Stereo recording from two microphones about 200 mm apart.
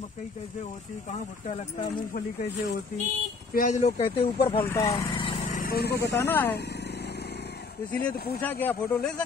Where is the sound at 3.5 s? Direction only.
40° left (ahead or behind).